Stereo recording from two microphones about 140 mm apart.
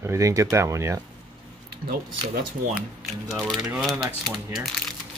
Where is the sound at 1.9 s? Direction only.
90° right.